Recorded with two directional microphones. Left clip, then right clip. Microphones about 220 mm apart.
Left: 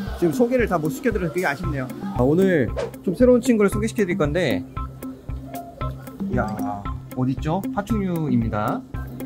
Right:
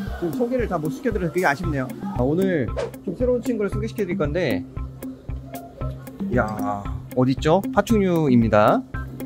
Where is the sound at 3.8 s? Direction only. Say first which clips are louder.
Left 3 dB; 15° left (ahead or behind).